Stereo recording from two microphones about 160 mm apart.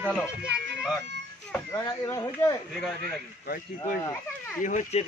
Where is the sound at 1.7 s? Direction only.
20° left (ahead or behind).